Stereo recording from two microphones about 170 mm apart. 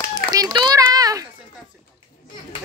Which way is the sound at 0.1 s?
20° right (ahead or behind).